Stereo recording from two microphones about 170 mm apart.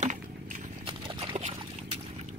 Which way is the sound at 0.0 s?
45° right (ahead or behind).